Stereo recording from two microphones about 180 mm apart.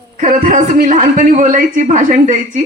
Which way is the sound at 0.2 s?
45° right (ahead or behind).